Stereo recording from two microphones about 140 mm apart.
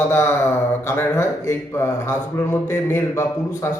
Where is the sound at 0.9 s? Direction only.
20° left (ahead or behind).